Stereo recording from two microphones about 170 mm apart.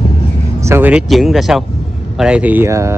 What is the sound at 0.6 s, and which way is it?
Speech, 15° right (ahead or behind).